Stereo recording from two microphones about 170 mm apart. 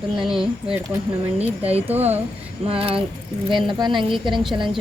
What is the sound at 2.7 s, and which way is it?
Speech, 35° right (ahead or behind).